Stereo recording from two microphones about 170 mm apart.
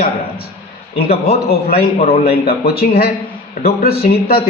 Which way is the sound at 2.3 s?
65° left (ahead or behind).